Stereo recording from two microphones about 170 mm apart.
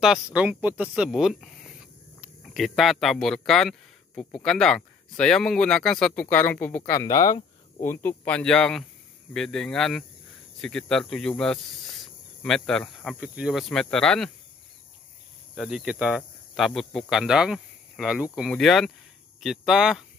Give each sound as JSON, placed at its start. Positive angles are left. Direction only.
{"t": 0.0, "sound": "speech", "side_deg": -5}
{"t": 15.5, "sound": "speech", "side_deg": 0}